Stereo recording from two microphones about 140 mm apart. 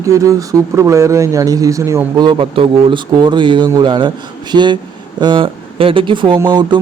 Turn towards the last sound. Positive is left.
turn(degrees=-35)  # may be behind; listen again after turning